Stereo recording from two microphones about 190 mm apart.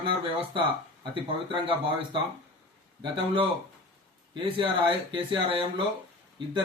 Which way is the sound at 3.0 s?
25° right (ahead or behind).